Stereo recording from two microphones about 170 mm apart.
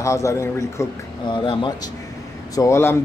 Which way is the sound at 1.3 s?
30° left (ahead or behind).